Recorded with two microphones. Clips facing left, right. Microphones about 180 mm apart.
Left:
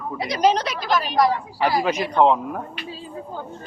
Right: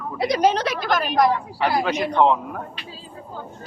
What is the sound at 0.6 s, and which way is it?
A woman's voice, 55° right (ahead or behind).